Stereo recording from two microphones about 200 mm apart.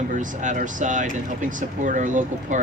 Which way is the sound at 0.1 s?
40° right (ahead or behind).